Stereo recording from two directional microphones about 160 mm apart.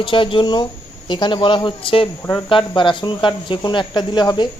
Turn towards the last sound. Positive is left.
turn(degrees=30)  # may be behind; listen again after turning